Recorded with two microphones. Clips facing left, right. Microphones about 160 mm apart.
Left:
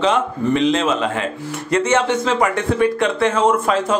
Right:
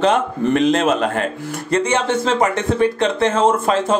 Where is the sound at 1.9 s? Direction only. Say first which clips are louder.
Left 1 dB; 30° right (ahead or behind).